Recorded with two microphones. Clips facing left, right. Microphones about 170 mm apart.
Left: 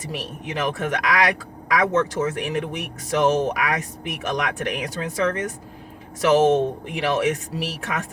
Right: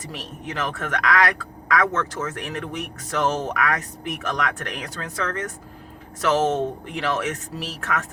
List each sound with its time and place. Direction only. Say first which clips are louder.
0.1 s speech: left 4 dB; 15° left (ahead or behind)